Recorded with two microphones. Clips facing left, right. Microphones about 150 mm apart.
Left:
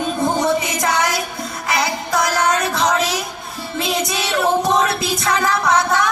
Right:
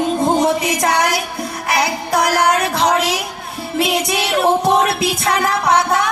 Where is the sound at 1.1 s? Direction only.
65° right (ahead or behind).